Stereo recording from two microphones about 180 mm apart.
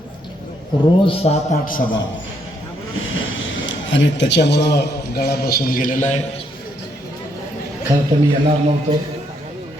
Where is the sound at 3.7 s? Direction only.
90° left; by 6.2 s 45° left (ahead or behind).